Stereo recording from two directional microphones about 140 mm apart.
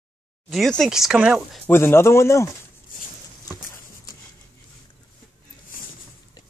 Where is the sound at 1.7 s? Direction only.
15° left (ahead or behind).